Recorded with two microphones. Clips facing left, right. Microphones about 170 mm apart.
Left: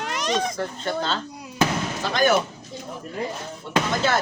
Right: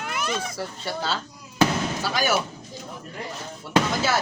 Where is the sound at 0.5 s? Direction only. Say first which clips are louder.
Left 4 dB; 5° right (ahead or behind).